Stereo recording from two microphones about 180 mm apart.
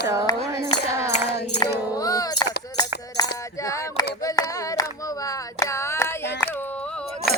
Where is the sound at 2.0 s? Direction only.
20° left (ahead or behind).